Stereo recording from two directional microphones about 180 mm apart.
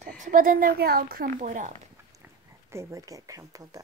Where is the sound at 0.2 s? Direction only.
50° right (ahead or behind).